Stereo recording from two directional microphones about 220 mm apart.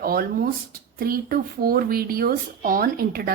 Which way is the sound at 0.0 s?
40° right (ahead or behind).